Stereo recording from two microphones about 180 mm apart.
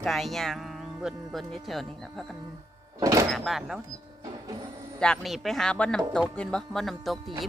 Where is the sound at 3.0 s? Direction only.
20° right (ahead or behind).